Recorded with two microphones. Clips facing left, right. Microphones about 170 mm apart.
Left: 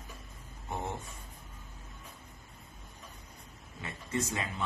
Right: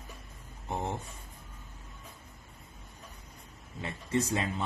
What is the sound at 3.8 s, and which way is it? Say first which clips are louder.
Speech: right 4 dB; 30° right (ahead or behind).